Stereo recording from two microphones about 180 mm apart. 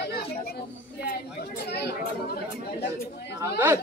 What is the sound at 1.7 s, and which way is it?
Chatter, 65° left (ahead or behind).